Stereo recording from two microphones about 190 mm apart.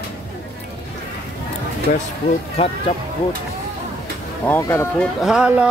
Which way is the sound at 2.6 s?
30° left (ahead or behind).